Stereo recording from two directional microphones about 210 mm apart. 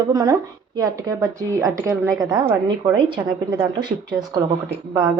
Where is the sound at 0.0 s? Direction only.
15° right (ahead or behind).